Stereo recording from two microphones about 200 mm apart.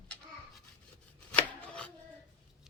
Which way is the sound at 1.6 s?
5° left (ahead or behind).